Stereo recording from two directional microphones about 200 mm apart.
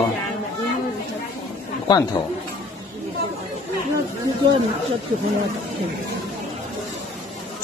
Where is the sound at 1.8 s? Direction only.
20° left (ahead or behind).